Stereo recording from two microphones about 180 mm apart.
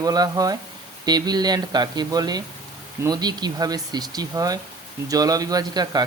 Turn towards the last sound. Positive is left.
turn(degrees=-20)  # may be behind; listen again after turning